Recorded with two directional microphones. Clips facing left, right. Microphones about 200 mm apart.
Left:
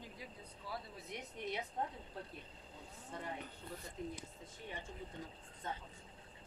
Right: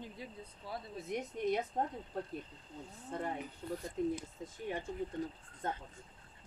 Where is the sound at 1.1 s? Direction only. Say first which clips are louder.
Right 10 dB; 45° right (ahead or behind).